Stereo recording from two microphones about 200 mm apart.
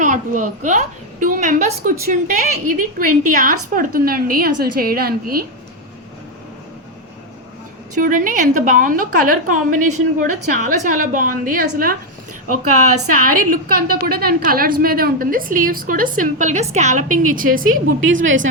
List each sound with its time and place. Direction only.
0.0 s a woman's voice: 40° right (ahead or behind)
7.9 s a woman's voice: 40° right (ahead or behind)
12.9 s a woman's voice: 90° right
13.2 s a woman's voice: 45° right (ahead or behind)